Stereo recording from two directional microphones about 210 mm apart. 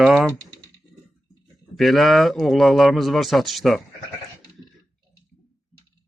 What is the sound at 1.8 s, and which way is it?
A man's voice, centre (ahead or behind).